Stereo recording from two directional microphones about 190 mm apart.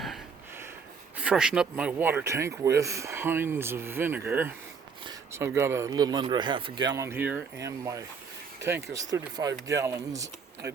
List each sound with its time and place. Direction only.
1.2 s speech: 5° right (ahead or behind)